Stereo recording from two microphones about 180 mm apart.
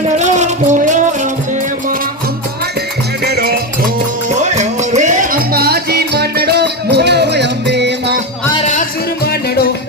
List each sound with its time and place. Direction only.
0.2 s a sound: 40° right (ahead or behind)
3.2 s music: 60° right (ahead or behind)
4.4 s music: 40° right (ahead or behind); by 8.1 s 70° right (ahead or behind)
9.2 s music: 60° left (ahead or behind)